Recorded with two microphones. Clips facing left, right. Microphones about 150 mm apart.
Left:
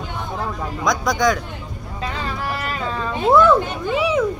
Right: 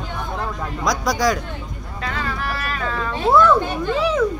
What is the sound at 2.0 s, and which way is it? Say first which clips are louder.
Vehicle: even; 20° left (ahead or behind).